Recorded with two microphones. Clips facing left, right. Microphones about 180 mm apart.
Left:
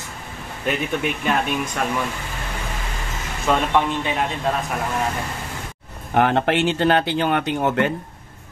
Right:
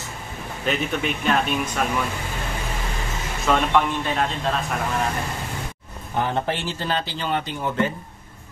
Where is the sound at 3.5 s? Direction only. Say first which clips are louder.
Left 1 dB; 5° left (ahead or behind).